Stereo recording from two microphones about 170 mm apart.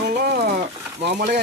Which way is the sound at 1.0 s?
75° right (ahead or behind).